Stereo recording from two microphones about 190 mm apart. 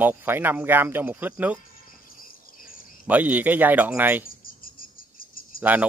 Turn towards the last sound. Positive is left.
turn(degrees=50)  # may be behind; listen again after turning